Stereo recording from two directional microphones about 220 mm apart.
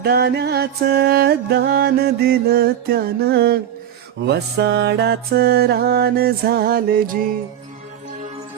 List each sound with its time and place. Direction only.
0.0 s music: 45° right (ahead or behind)